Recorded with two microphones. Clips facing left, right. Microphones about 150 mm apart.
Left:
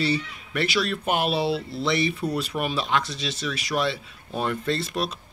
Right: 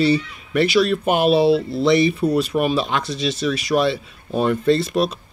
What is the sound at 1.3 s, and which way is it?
Speech, 65° right (ahead or behind).